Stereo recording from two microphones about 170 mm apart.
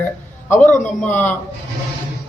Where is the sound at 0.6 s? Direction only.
45° left (ahead or behind).